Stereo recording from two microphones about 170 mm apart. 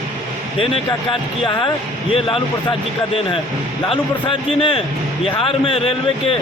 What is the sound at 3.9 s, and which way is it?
A man's voice, 30° left (ahead or behind).